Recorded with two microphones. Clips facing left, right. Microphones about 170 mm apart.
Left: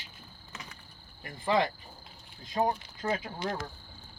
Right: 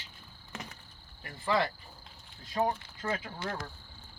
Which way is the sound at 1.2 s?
20° left (ahead or behind).